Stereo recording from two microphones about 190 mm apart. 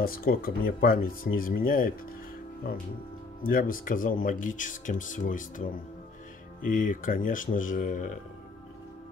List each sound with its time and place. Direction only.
0.0 s speech: 50° left (ahead or behind)
3.4 s speech: 50° left (ahead or behind)